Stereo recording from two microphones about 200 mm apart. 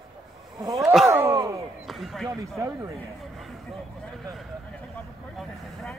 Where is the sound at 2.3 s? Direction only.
15° right (ahead or behind).